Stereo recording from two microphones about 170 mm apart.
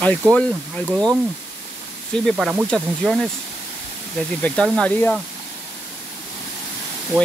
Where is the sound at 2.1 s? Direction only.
Centre (ahead or behind).